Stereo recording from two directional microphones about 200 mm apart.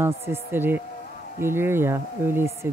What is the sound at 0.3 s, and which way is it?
Speech, 10° right (ahead or behind).